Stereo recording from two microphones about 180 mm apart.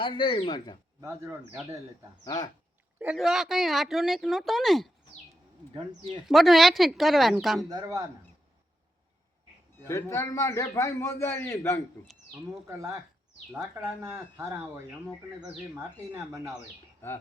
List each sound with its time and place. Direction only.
0.0 s speech: 30° left (ahead or behind)
1.0 s speech: 15° right (ahead or behind)
2.2 s speech: 20° left (ahead or behind)
3.0 s speech: 5° right (ahead or behind)
6.2 s speech: centre (ahead or behind)
7.7 s speech: 20° right (ahead or behind)
9.7 s a man's voice: 15° left (ahead or behind)
12.6 s speech: 15° right (ahead or behind)